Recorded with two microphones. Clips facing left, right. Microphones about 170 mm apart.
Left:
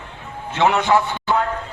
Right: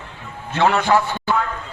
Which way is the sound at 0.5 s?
20° left (ahead or behind).